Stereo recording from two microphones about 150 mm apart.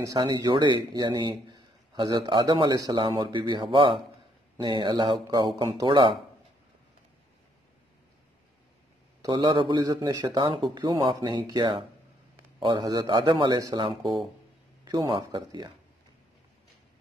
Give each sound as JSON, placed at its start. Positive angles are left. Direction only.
{"t": 0.0, "sound": "speech", "side_deg": -25}
{"t": 9.2, "sound": "speech", "side_deg": -30}
{"t": 14.9, "sound": "speech", "side_deg": -25}